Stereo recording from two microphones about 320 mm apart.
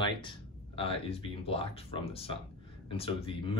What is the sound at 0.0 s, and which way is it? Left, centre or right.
Speech, centre.